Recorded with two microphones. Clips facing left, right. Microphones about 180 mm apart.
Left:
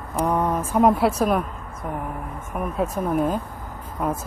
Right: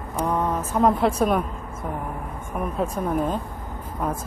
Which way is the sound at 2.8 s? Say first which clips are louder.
Left 2 dB; 5° left (ahead or behind).